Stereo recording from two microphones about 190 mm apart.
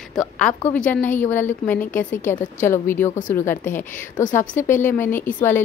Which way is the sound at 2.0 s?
40° left (ahead or behind).